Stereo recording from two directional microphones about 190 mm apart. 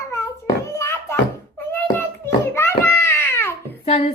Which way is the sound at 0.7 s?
15° left (ahead or behind).